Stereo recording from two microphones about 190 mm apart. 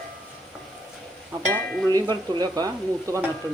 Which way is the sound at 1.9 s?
20° right (ahead or behind).